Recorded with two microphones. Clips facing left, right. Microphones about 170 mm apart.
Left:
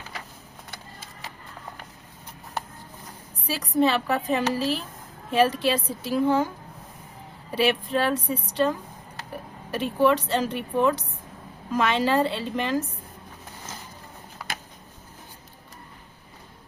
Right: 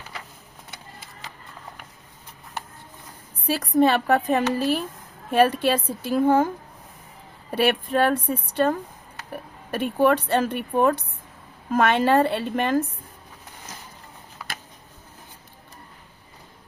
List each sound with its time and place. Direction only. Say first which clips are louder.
3.4 s a woman's voice: right 3 dB; 50° right (ahead or behind)
7.5 s a woman's voice: right 2 dB; 55° right (ahead or behind)